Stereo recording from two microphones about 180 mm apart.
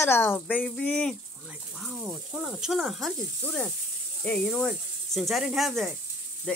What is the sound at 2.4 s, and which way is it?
Speech, centre (ahead or behind).